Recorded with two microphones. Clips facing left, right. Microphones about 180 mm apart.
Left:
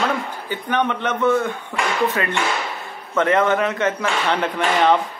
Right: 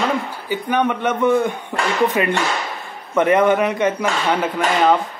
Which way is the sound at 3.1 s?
15° right (ahead or behind).